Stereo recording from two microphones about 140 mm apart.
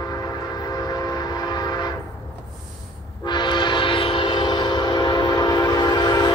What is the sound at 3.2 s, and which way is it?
Train, 35° left (ahead or behind).